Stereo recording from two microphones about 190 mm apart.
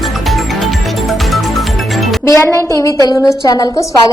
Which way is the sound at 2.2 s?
15° left (ahead or behind).